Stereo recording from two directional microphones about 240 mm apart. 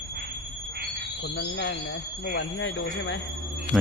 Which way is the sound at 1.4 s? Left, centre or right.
Left.